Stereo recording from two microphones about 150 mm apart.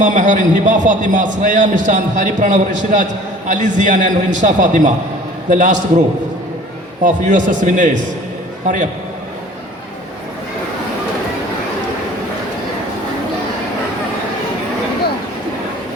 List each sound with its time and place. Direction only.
0.0 s a man's voice: 55° right (ahead or behind)
7.0 s a man's voice: 55° right (ahead or behind)